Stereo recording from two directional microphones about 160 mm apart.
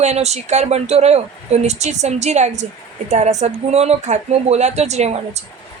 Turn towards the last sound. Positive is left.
turn(degrees=-45)  # may be behind; listen again after turning